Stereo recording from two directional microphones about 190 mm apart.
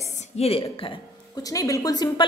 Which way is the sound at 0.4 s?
30° left (ahead or behind).